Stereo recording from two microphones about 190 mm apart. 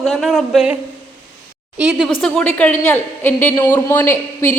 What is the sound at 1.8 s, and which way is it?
A woman's voice, 5° right (ahead or behind).